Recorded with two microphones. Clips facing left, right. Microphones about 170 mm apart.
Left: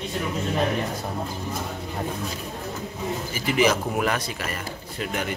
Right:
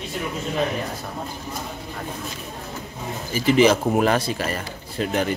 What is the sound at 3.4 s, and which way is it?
A man's voice, 30° right (ahead or behind).